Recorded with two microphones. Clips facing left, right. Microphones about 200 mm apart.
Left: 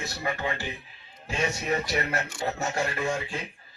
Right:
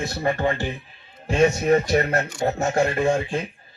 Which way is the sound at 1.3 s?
45° right (ahead or behind).